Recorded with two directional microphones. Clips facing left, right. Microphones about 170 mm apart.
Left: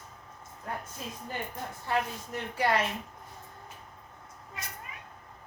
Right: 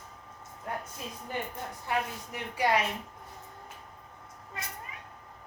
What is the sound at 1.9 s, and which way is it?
Speech, 15° right (ahead or behind).